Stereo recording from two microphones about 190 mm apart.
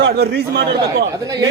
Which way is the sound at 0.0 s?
60° right (ahead or behind).